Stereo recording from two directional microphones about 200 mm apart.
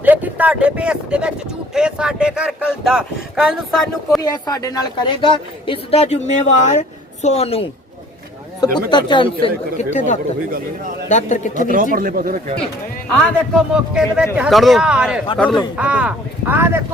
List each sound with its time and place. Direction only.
0.0 s speech: 10° right (ahead or behind)
4.2 s a man's voice: 20° left (ahead or behind); by 11.7 s 40° left (ahead or behind)
11.7 s speech: 45° right (ahead or behind)
13.1 s a man's voice: 5° left (ahead or behind)
15.4 s speech: 20° left (ahead or behind)
15.7 s speech: 5° right (ahead or behind)